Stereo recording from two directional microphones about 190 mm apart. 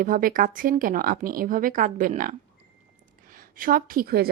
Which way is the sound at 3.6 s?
50° right (ahead or behind).